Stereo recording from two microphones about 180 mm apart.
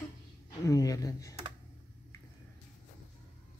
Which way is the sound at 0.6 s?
20° left (ahead or behind).